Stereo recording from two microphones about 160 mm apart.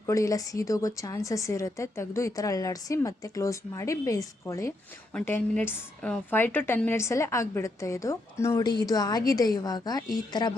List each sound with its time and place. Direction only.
0.0 s a woman's voice: 20° left (ahead or behind)